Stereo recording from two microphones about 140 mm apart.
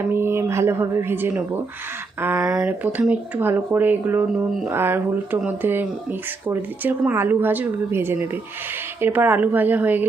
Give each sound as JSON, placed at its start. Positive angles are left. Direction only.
{"t": 0.0, "sound": "a woman's voice", "side_deg": -15}